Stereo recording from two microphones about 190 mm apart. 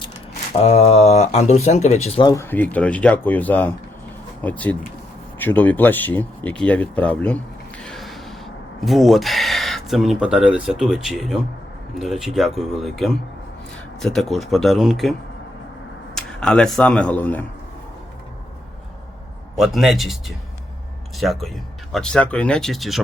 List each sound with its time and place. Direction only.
0.6 s speech: 35° left (ahead or behind)
2.2 s speech: 15° left (ahead or behind); by 15.1 s centre (ahead or behind)
16.1 s speech: 5° left (ahead or behind)
19.5 s speech: centre (ahead or behind)